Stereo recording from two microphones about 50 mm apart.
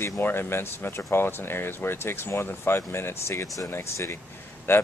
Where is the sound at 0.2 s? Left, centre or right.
Left.